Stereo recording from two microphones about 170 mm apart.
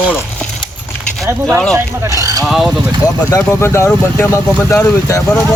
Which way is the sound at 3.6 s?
15° left (ahead or behind).